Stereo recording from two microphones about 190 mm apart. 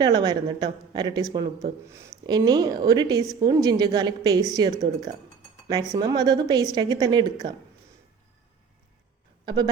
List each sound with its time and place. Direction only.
0.0 s a woman's voice: 20° right (ahead or behind)